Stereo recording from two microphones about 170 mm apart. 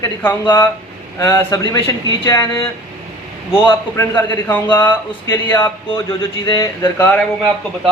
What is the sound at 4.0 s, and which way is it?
Speech, 15° left (ahead or behind).